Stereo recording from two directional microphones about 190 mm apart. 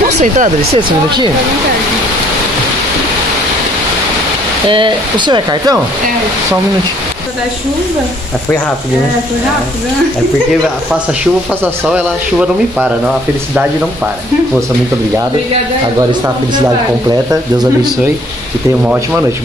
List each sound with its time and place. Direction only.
0.2 s speech: 40° right (ahead or behind)
0.7 s speech: 25° right (ahead or behind)
4.6 s speech: 25° right (ahead or behind)
11.6 s speech: 5° right (ahead or behind)
16.0 s speech: 20° right (ahead or behind)